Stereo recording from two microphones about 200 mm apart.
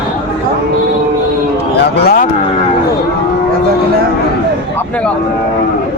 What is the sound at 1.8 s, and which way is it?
Speech, 55° left (ahead or behind).